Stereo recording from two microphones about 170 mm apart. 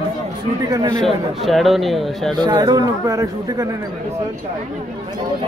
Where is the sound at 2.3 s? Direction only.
25° right (ahead or behind).